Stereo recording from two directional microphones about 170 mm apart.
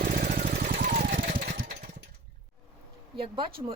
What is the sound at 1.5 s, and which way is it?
Engine, 55° right (ahead or behind).